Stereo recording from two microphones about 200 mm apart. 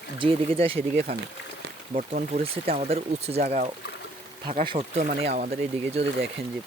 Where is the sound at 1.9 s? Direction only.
40° right (ahead or behind).